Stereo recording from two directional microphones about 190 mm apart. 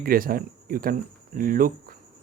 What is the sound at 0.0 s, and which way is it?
Speech, 50° right (ahead or behind).